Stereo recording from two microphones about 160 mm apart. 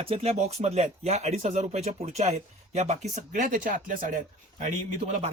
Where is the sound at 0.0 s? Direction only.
40° right (ahead or behind).